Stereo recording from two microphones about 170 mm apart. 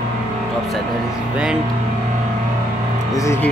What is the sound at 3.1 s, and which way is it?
Speech, 20° left (ahead or behind).